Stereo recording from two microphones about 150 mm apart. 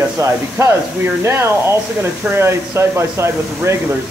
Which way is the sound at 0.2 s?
20° right (ahead or behind).